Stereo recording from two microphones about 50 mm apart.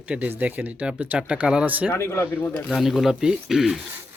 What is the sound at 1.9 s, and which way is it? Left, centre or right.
Speech, left.